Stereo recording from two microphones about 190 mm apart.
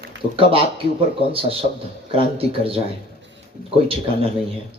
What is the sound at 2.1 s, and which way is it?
Speech, 30° right (ahead or behind).